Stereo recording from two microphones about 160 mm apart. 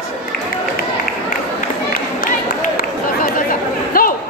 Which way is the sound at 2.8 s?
60° left (ahead or behind).